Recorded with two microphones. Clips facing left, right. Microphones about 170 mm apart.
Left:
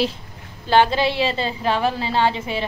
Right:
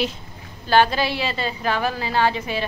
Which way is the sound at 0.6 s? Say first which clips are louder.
Left 1 dB; 20° left (ahead or behind).